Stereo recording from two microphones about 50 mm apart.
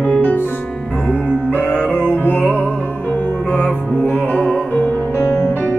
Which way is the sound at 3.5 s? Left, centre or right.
Left.